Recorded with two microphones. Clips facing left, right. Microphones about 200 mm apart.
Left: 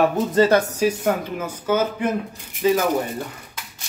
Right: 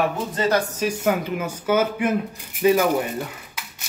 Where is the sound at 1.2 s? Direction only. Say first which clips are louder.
Right 1 dB; 10° right (ahead or behind).